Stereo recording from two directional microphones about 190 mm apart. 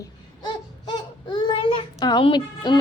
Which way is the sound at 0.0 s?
20° left (ahead or behind).